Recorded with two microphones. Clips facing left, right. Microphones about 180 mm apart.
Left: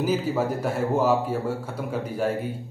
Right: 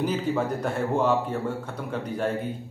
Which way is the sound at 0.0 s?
5° left (ahead or behind).